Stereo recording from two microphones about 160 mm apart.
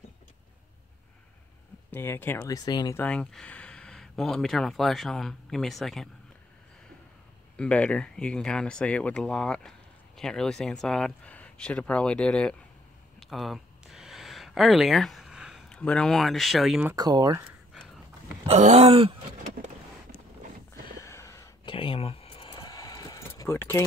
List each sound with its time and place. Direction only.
1.9 s speech: 10° left (ahead or behind)
2.5 s speech: 25° left (ahead or behind)
3.0 s speech: 5° left (ahead or behind)
7.5 s speech: 10° left (ahead or behind)
13.2 s a sound: centre (ahead or behind)
15.7 s speech: 5° left (ahead or behind)
16.9 s speech: 25° right (ahead or behind)
18.5 s groan: 45° right (ahead or behind)
21.0 s a sound: 20° left (ahead or behind)
21.6 s a sound: 35° left (ahead or behind); by 23.8 s 15° left (ahead or behind)